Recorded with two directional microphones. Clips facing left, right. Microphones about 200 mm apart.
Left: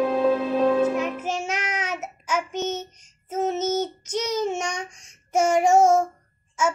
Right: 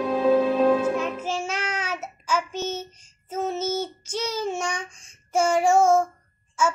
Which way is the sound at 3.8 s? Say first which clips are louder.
Left 2 dB; 20° left (ahead or behind).